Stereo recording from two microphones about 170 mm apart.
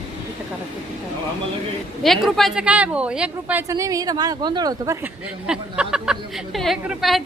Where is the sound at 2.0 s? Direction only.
Centre (ahead or behind).